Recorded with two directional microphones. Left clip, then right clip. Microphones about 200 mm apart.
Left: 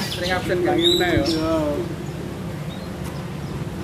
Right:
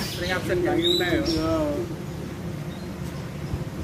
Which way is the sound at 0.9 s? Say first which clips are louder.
Left 4 dB; 10° right (ahead or behind).